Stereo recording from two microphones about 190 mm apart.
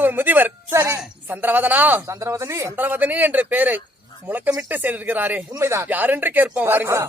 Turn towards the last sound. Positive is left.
turn(degrees=-15)  # may be behind; listen again after turning